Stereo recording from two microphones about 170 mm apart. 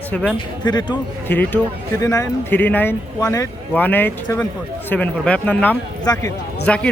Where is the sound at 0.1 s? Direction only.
5° left (ahead or behind).